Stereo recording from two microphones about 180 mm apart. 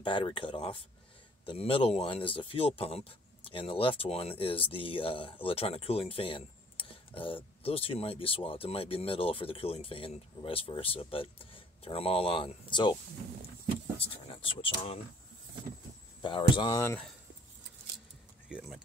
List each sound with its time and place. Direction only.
0.0 s speech: 30° left (ahead or behind)
13.9 s speech: 30° left (ahead or behind)
16.2 s speech: 25° left (ahead or behind)
16.8 s speech: 10° left (ahead or behind)
18.5 s speech: centre (ahead or behind)